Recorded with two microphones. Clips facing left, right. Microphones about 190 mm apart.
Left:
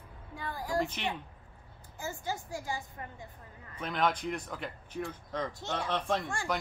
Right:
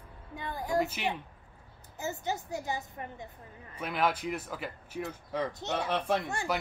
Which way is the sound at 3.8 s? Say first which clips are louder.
Right 1 dB; 10° right (ahead or behind).